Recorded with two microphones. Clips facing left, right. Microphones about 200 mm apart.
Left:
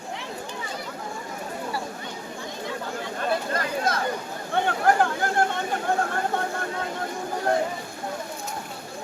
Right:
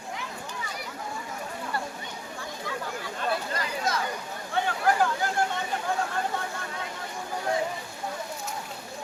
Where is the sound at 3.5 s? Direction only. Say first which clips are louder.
Left 4 dB; 55° left (ahead or behind).